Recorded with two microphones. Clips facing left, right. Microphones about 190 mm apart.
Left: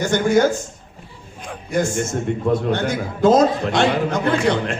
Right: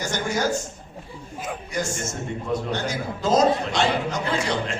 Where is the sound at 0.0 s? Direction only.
55° left (ahead or behind).